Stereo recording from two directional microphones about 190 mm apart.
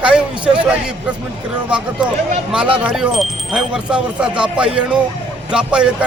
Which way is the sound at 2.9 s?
Centre (ahead or behind).